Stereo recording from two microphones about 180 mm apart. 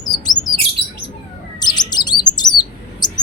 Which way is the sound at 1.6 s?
25° left (ahead or behind).